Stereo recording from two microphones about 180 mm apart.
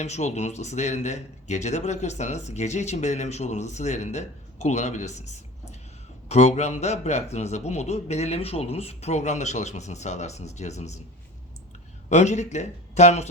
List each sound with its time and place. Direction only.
0.0 s speech: 40° left (ahead or behind)
12.0 s speech: 40° left (ahead or behind)